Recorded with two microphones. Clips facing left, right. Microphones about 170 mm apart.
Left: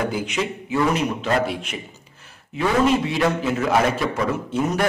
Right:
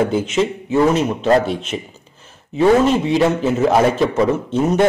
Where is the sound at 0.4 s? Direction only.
25° right (ahead or behind).